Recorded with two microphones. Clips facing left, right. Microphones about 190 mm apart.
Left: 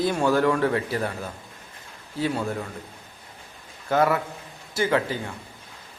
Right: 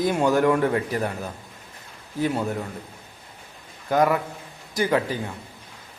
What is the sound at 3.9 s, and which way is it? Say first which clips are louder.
Speech: right 1 dB; 15° right (ahead or behind).